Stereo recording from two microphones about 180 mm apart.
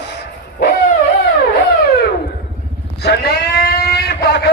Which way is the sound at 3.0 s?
65° left (ahead or behind).